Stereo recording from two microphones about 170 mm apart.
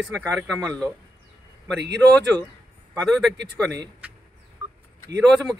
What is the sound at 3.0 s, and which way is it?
Speech, 5° left (ahead or behind).